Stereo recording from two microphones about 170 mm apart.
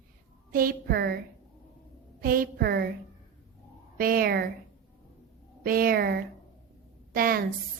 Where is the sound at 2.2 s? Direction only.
60° right (ahead or behind).